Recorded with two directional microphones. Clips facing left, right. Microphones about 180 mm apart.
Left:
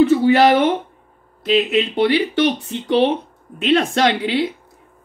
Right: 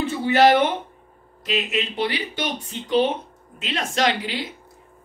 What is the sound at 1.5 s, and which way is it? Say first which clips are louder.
Speech: left 9 dB; 60° left (ahead or behind).